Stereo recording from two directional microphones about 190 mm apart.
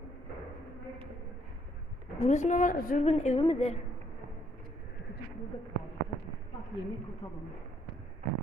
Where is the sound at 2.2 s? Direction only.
40° left (ahead or behind).